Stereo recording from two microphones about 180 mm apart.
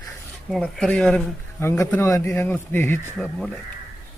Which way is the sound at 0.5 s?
5° left (ahead or behind).